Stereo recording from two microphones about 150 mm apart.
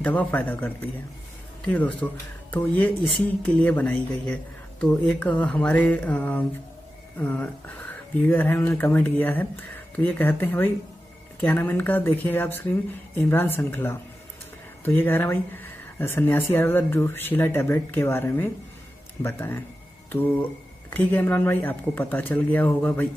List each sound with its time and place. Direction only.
0.0 s a man's voice: 10° left (ahead or behind)
20.9 s speech: 10° left (ahead or behind)